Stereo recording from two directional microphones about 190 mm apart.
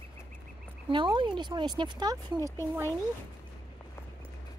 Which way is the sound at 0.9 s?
25° right (ahead or behind).